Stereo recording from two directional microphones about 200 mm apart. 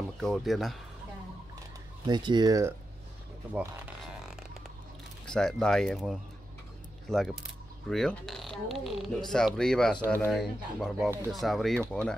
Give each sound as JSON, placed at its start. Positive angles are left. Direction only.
{"t": 0.2, "sound": "speech", "side_deg": 0}
{"t": 2.0, "sound": "speech", "side_deg": -20}
{"t": 3.5, "sound": "zipper", "side_deg": -5}
{"t": 5.2, "sound": "speech", "side_deg": 5}